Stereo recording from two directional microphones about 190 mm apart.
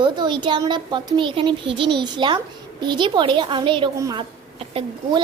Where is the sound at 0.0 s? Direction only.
25° right (ahead or behind).